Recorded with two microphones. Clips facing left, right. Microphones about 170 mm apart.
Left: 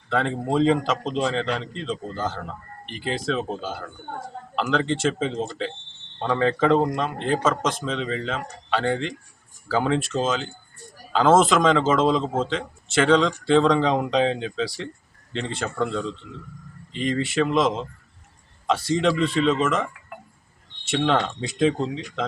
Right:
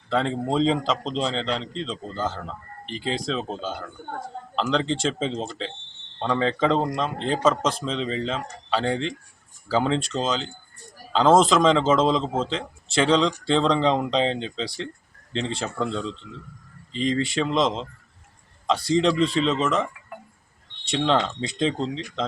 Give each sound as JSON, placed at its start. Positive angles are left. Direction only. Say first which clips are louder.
{"t": 0.1, "sound": "a man's voice", "louder": "even", "side_deg": 5}
{"t": 1.1, "sound": "a man's voice", "louder": "left 2 dB", "side_deg": -25}
{"t": 1.7, "sound": "a man's voice", "louder": "left 1 dB", "side_deg": 5}
{"t": 4.9, "sound": "a man's voice", "louder": "left 2 dB", "side_deg": 5}